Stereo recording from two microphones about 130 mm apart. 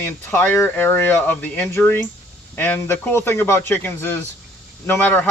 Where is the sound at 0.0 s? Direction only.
15° left (ahead or behind).